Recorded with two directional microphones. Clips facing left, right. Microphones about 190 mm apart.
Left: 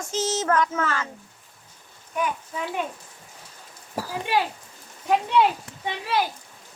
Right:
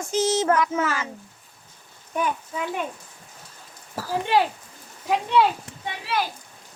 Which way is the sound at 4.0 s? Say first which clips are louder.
Left 1 dB; 15° left (ahead or behind).